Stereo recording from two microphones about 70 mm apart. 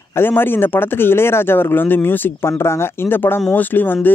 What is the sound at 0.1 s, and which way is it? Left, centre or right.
Speech, left.